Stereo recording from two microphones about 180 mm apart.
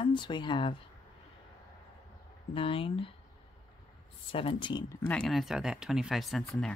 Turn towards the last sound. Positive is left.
turn(degrees=0)  # may be behind; listen again after turning